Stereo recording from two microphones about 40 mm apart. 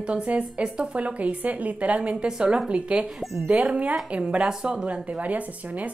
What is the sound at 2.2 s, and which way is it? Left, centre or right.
Speech, right.